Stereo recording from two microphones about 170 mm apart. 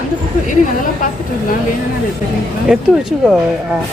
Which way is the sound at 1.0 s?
55° left (ahead or behind).